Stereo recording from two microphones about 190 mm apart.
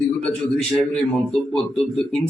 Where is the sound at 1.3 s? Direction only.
5° left (ahead or behind).